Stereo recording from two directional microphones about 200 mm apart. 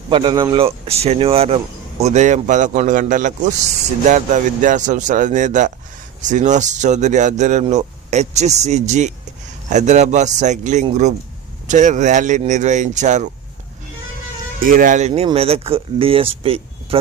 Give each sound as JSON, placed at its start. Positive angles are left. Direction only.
{"t": 0.1, "sound": "speech", "side_deg": -25}
{"t": 14.6, "sound": "speech", "side_deg": -45}
{"t": 16.4, "sound": "a sound", "side_deg": -30}